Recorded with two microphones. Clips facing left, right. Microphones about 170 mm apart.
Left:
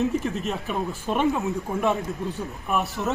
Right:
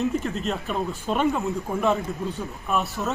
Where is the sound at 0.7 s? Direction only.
5° left (ahead or behind).